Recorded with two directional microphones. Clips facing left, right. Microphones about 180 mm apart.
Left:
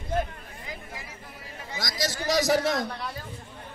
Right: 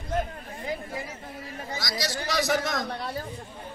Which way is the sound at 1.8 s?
50° left (ahead or behind).